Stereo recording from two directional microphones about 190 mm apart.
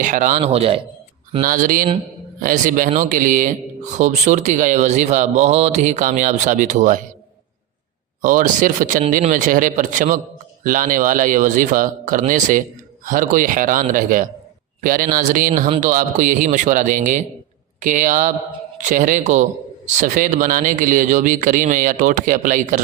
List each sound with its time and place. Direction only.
0.0 s speech: 40° right (ahead or behind)
1.3 s a man's voice: 45° right (ahead or behind)
8.2 s a man's voice: 45° right (ahead or behind)